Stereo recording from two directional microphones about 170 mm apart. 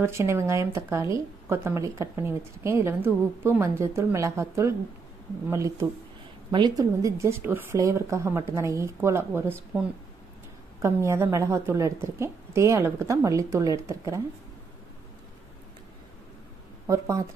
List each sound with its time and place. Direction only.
0.0 s speech: 15° right (ahead or behind)
16.8 s speech: 20° right (ahead or behind)